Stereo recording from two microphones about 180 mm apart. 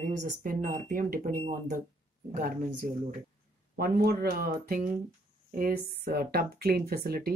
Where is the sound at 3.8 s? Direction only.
55° right (ahead or behind).